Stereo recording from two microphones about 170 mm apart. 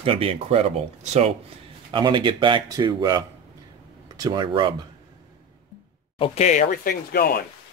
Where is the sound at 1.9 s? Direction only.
30° right (ahead or behind).